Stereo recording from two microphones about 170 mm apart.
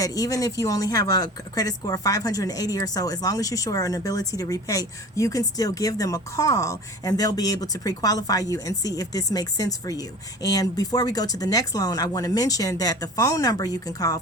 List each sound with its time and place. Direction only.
0.0 s speech: 20° left (ahead or behind)